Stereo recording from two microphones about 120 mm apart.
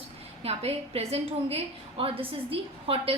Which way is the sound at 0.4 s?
60° right (ahead or behind).